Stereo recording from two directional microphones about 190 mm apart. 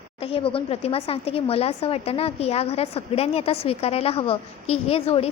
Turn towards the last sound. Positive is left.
turn(degrees=30)  # may be behind; listen again after turning